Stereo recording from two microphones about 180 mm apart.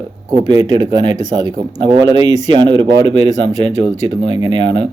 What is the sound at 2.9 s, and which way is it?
Speech, 90° right.